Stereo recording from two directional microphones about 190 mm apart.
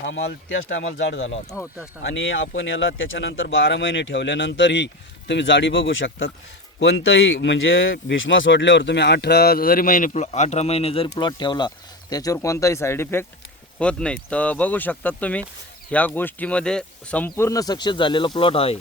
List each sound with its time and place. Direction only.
0.0 s speech: 65° left (ahead or behind); by 6.3 s 90° left
6.7 s speech: 75° left (ahead or behind); by 18.8 s 30° left (ahead or behind)